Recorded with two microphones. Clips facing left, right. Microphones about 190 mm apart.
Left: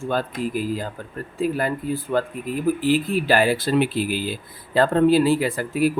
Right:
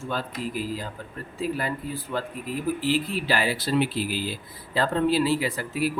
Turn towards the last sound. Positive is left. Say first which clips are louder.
# left 6 dB
turn(degrees=50)  # may be behind; listen again after turning